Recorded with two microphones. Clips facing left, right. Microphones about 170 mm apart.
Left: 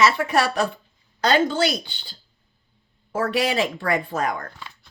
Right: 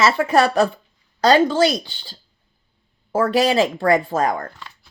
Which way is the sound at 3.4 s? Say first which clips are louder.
Right 6 dB; 30° right (ahead or behind).